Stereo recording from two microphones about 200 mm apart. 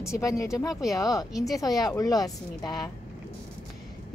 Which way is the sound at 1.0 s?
20° left (ahead or behind).